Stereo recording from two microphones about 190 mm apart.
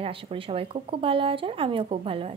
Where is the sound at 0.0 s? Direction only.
30° right (ahead or behind).